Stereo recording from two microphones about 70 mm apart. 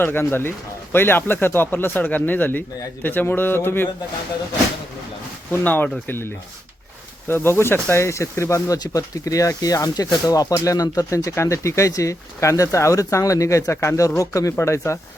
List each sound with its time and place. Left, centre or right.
0.0 s speech: left
5.5 s speech: left
7.3 s speech: left